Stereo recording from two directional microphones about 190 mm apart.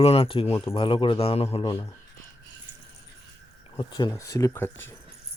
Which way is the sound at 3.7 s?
20° left (ahead or behind).